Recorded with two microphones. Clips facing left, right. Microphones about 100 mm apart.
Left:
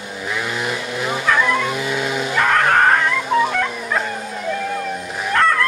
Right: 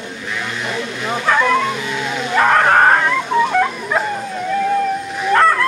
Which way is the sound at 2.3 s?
15° right (ahead or behind).